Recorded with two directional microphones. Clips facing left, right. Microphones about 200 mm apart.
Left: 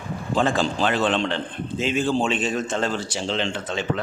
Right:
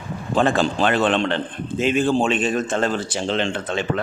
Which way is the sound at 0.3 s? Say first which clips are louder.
Right 3 dB; 60° right (ahead or behind).